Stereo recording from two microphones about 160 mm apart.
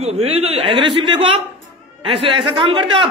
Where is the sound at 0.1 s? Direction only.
40° right (ahead or behind).